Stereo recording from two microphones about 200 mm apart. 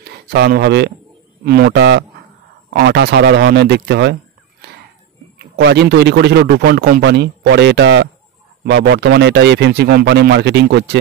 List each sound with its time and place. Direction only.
0.0 s speech: 55° right (ahead or behind)